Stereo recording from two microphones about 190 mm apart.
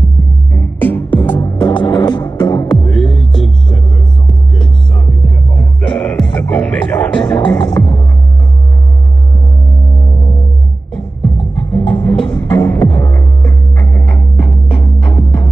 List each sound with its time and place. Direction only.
0.5 s music: 10° left (ahead or behind)
3.0 s music: centre (ahead or behind)
5.9 s music: 5° left (ahead or behind)
7.5 s music: 20° left (ahead or behind)
11.7 s music: 5° left (ahead or behind)
14.7 s music: 25° left (ahead or behind)